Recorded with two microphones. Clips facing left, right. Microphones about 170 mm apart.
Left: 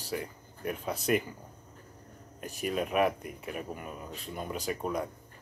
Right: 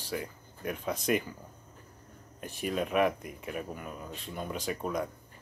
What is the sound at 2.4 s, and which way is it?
Speech, 40° left (ahead or behind).